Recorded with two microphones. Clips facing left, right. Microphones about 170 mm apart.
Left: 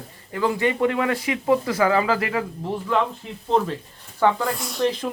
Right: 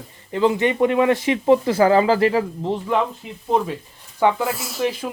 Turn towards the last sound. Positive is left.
turn(degrees=-5)  # may be behind; listen again after turning